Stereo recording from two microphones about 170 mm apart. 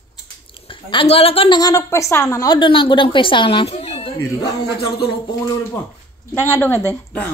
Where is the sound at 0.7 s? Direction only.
30° left (ahead or behind).